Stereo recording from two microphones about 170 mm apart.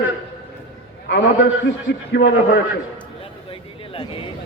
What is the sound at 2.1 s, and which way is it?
Speech, 90° left.